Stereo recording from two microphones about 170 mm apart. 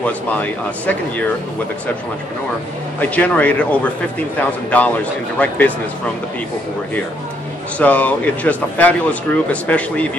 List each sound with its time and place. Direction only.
0.0 s speech: 10° left (ahead or behind)
3.0 s speech: 10° left (ahead or behind)
7.8 s speech: 10° left (ahead or behind)